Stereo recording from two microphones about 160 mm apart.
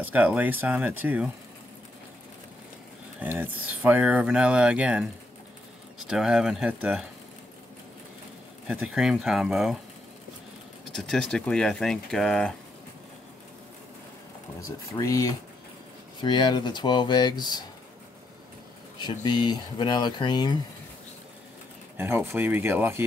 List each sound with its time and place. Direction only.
0.0 s speech: 10° right (ahead or behind)
3.2 s speech: 10° right (ahead or behind)
8.6 s speech: 5° right (ahead or behind)
10.9 s speech: 5° left (ahead or behind)
14.6 s speech: 20° left (ahead or behind)
18.9 s speech: 25° left (ahead or behind)
21.9 s speech: 15° right (ahead or behind)